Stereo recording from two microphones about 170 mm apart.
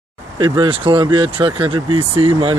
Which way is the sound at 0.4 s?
30° right (ahead or behind).